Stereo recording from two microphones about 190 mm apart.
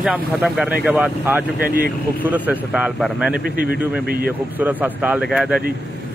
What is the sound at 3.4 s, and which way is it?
Speech, 50° right (ahead or behind).